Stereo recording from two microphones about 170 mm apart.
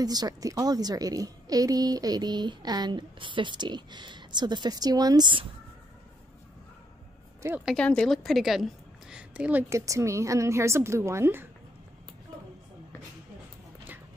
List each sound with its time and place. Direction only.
0.0 s a woman's voice: 25° right (ahead or behind)
7.4 s a woman's voice: 10° right (ahead or behind)
7.7 s a woman's voice: 5° left (ahead or behind); by 11.4 s 15° right (ahead or behind)